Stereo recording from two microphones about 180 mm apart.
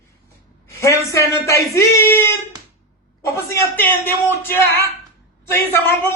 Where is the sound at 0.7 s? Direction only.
15° left (ahead or behind).